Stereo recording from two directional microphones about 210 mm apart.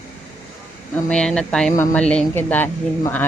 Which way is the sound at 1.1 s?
5° left (ahead or behind).